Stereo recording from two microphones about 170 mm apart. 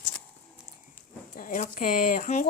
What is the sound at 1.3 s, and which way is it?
A woman's voice, 50° left (ahead or behind).